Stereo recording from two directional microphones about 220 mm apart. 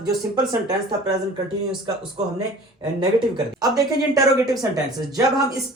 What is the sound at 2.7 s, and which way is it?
A woman's voice, 20° right (ahead or behind).